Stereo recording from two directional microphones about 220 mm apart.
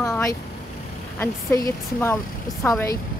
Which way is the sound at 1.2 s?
10° left (ahead or behind).